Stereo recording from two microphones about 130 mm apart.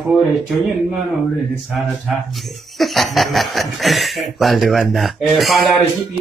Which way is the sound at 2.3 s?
Centre (ahead or behind).